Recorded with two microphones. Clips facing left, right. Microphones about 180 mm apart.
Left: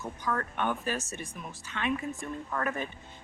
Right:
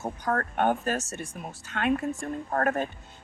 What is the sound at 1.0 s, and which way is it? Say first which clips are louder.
Speech: right 3 dB; 90° right.